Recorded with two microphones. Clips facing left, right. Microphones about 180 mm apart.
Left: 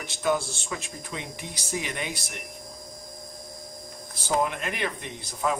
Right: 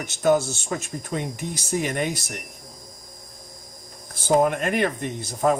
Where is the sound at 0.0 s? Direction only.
45° right (ahead or behind).